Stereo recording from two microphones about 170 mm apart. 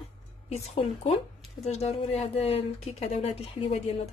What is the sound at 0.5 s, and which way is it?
Speech, 40° left (ahead or behind).